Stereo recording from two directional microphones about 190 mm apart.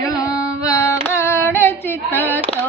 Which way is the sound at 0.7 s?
15° left (ahead or behind).